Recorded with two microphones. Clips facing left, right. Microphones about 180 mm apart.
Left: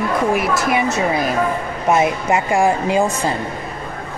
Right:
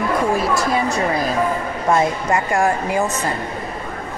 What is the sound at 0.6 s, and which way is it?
Speech, 20° left (ahead or behind).